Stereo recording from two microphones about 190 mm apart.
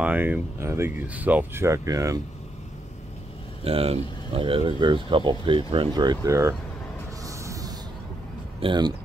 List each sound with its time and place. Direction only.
0.0 s speech: 10° right (ahead or behind)
3.6 s speech: 30° right (ahead or behind); by 6.5 s 15° right (ahead or behind)
7.2 s music: 15° right (ahead or behind)
8.5 s speech: 25° right (ahead or behind)